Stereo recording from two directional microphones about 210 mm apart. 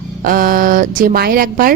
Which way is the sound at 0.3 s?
40° right (ahead or behind).